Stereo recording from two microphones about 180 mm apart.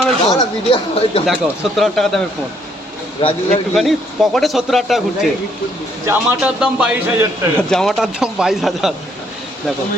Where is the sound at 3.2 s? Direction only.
30° left (ahead or behind).